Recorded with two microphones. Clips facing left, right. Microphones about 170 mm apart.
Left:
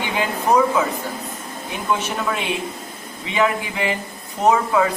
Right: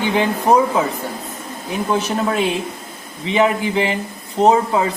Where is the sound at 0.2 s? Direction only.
30° right (ahead or behind).